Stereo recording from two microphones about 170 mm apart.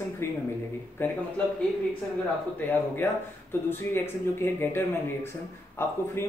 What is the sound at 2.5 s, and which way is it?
Speech, 15° left (ahead or behind).